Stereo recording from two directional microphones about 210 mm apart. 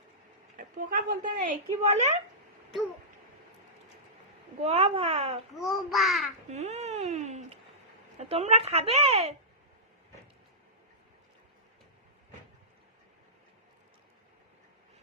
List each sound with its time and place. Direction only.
0.5 s a woman's voice: 40° right (ahead or behind)
4.6 s speech: 30° right (ahead or behind)
5.5 s a child's voice: centre (ahead or behind)
6.5 s a sound: 30° right (ahead or behind)
8.3 s speech: 30° right (ahead or behind)